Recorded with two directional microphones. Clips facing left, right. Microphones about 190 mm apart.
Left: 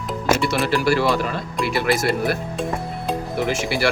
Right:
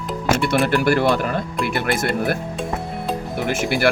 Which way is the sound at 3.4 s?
55° right (ahead or behind).